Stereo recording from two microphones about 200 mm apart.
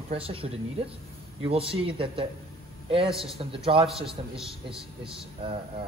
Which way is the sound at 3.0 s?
Centre (ahead or behind).